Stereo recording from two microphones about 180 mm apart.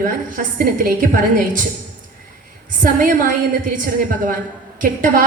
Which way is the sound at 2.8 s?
50° right (ahead or behind).